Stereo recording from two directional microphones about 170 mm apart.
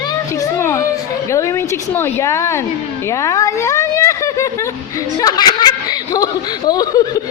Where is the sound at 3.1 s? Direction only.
20° left (ahead or behind).